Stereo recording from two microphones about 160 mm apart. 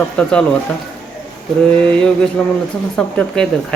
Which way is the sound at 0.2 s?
5° left (ahead or behind).